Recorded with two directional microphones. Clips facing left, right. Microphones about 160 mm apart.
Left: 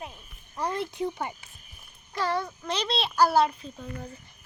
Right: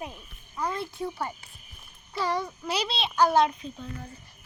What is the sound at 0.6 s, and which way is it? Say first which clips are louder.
Speech: left 2 dB; 20° left (ahead or behind).